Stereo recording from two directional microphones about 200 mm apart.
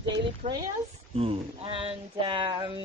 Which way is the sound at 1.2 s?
30° right (ahead or behind).